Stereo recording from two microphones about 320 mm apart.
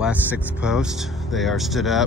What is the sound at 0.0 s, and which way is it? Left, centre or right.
Speech, centre.